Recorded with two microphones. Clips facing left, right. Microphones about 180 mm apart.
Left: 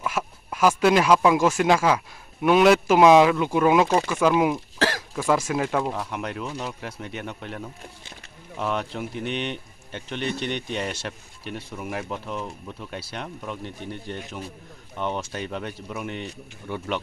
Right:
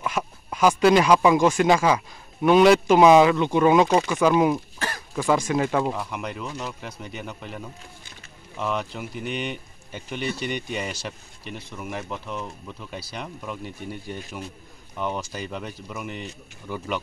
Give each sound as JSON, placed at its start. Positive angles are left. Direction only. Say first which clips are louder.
{"t": 0.0, "sound": "speech", "louder": "right 1 dB", "side_deg": 5}
{"t": 4.7, "sound": "cough", "louder": "left 8 dB", "side_deg": 90}
{"t": 5.1, "sound": "speech", "louder": "right 5 dB", "side_deg": 5}